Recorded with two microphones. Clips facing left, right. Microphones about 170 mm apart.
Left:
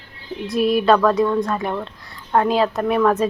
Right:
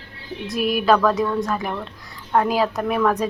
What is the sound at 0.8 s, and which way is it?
Speech, centre (ahead or behind).